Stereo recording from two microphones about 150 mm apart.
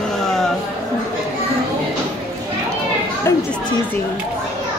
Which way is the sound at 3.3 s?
20° left (ahead or behind).